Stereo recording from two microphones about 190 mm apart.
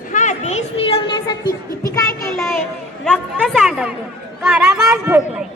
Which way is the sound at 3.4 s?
Centre (ahead or behind).